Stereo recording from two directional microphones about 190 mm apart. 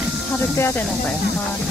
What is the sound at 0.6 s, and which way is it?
Speech, 15° left (ahead or behind).